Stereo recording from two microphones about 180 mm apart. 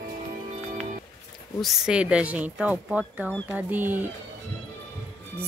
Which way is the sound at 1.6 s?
5° right (ahead or behind).